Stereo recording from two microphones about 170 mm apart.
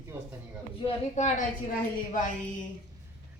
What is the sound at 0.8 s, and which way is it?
Speech, 45° left (ahead or behind).